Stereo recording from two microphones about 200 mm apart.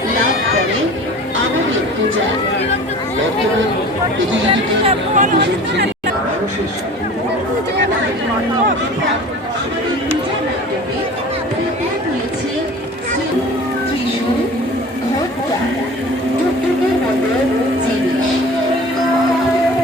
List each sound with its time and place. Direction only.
4.9 s speech: 40° right (ahead or behind)
5.4 s speech: 60° right (ahead or behind)